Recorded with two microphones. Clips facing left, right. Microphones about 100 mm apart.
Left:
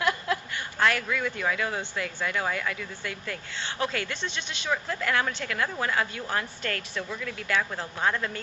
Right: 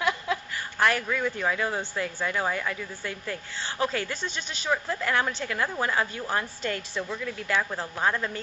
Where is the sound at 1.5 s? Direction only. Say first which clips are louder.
Right 1 dB; 25° right (ahead or behind).